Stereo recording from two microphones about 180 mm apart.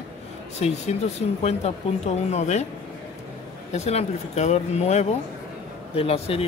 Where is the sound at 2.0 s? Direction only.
40° left (ahead or behind).